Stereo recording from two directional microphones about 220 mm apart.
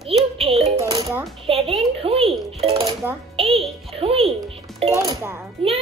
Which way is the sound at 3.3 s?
25° right (ahead or behind).